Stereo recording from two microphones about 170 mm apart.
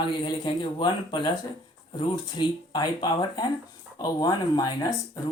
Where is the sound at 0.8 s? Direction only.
25° left (ahead or behind).